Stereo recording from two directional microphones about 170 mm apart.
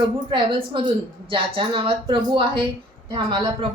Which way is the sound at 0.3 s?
30° right (ahead or behind).